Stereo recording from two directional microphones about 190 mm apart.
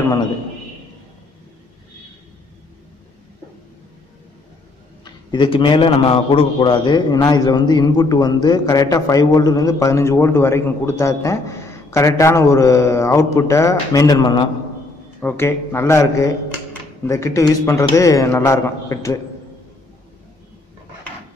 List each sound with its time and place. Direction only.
5.3 s a man's voice: 25° left (ahead or behind)